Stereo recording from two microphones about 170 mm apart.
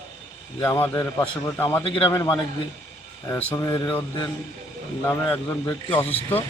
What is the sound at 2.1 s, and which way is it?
A man's voice, 20° left (ahead or behind).